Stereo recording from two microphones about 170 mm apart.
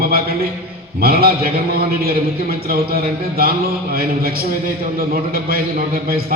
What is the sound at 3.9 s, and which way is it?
A man's voice, 60° right (ahead or behind).